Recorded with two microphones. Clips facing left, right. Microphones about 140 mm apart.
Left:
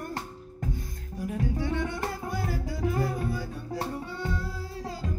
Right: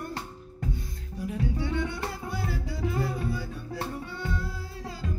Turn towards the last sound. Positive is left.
turn(degrees=40)  # may be behind; listen again after turning